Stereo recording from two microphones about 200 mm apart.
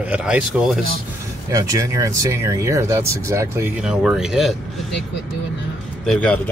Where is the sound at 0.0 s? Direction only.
5° right (ahead or behind).